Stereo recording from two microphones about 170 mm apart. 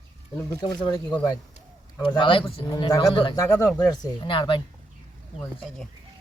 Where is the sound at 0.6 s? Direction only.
25° left (ahead or behind).